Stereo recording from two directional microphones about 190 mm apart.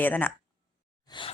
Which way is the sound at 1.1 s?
25° left (ahead or behind).